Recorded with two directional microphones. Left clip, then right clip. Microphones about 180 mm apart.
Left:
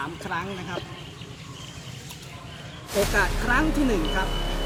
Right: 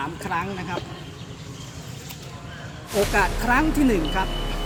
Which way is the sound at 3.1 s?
20° right (ahead or behind).